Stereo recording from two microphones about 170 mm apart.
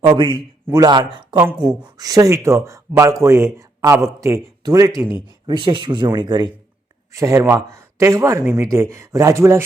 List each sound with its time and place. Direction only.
0.0 s a man's voice: 25° right (ahead or behind)